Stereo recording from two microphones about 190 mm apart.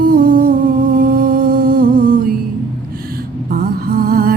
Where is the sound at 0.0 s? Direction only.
50° right (ahead or behind).